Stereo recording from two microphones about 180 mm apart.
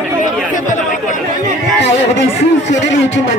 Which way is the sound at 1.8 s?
90° left.